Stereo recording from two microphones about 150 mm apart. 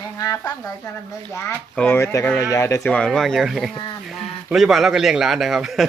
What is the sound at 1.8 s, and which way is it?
Speech, 15° left (ahead or behind).